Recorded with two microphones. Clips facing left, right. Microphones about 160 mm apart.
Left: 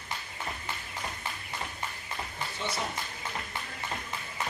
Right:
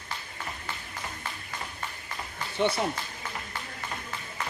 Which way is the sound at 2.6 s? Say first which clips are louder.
Right 11 dB; 65° right (ahead or behind).